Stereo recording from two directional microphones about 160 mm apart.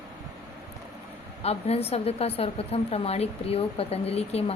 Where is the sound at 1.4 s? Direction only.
40° left (ahead or behind).